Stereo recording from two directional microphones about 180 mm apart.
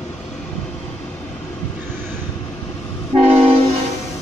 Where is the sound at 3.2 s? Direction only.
35° right (ahead or behind).